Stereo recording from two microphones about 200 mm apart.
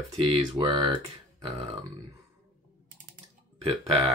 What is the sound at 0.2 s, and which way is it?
Speech, 25° right (ahead or behind).